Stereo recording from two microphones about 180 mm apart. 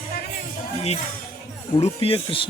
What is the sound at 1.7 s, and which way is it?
Speech, 30° left (ahead or behind).